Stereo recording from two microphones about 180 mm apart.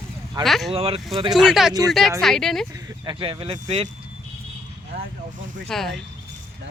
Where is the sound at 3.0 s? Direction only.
25° right (ahead or behind).